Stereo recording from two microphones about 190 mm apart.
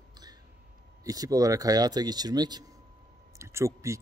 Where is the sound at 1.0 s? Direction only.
20° right (ahead or behind).